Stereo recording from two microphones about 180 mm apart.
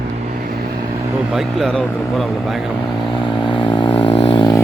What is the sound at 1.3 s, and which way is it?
Speech, centre (ahead or behind).